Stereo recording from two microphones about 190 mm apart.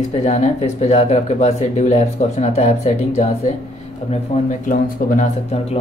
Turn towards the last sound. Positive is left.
turn(degrees=45)  # may be behind; listen again after turning